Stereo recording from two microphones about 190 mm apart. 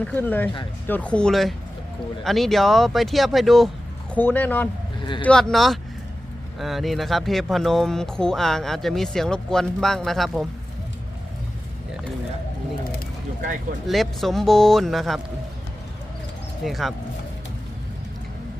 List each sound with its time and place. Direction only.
0.0 s speech: 10° left (ahead or behind)
4.9 s a sound: 25° left (ahead or behind)
5.2 s speech: 5° left (ahead or behind)
13.8 s speech: centre (ahead or behind)
16.6 s speech: centre (ahead or behind)